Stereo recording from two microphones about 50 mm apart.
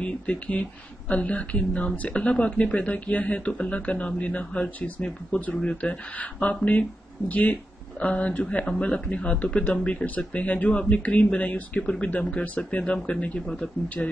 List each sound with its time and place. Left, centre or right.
0.0 s speech: left
5.6 s speech: left
14.0 s speech: centre